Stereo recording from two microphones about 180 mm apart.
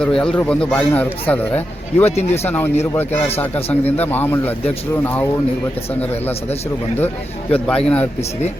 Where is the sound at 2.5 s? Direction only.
10° left (ahead or behind).